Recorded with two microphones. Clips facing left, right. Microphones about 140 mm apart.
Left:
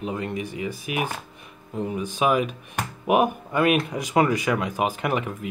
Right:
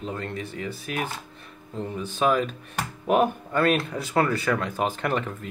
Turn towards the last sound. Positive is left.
turn(degrees=10)  # may be behind; listen again after turning